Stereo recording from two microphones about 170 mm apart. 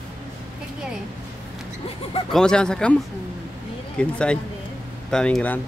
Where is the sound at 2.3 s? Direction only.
5° left (ahead or behind).